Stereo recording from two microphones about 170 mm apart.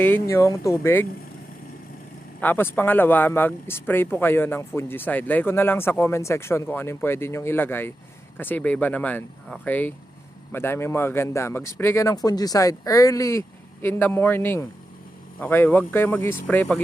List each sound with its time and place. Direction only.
0.0 s speech: 15° left (ahead or behind)
2.4 s speech: 10° left (ahead or behind)